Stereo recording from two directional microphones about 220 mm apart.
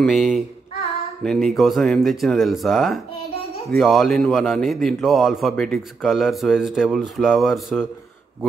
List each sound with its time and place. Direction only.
0.0 s a man's voice: centre (ahead or behind)